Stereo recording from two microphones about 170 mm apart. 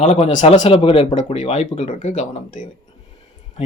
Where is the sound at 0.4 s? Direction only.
40° left (ahead or behind).